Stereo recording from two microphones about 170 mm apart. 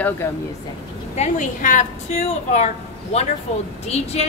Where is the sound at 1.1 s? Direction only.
45° left (ahead or behind).